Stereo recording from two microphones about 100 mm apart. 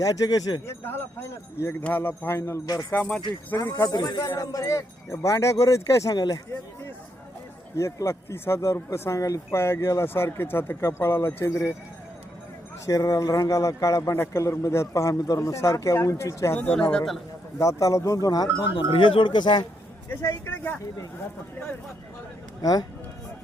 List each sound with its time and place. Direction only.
0.0 s a man's voice: 35° left (ahead or behind)
0.7 s speech: 25° left (ahead or behind)
3.6 s a man's voice: 40° left (ahead or behind)
7.8 s speech: 30° left (ahead or behind)
12.8 s a man's voice: 35° left (ahead or behind)
16.6 s speech: 15° left (ahead or behind)
17.6 s a man's voice: 35° left (ahead or behind)
18.8 s speech: 55° left (ahead or behind)
20.1 s speech: 25° left (ahead or behind)
22.6 s a man's voice: 40° left (ahead or behind)